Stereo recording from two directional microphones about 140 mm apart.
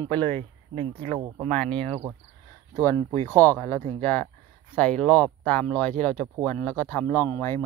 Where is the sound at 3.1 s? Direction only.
15° left (ahead or behind).